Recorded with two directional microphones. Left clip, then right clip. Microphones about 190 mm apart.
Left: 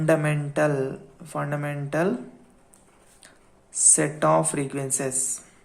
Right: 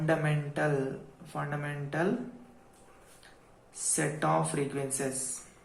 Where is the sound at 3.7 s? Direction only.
40° left (ahead or behind).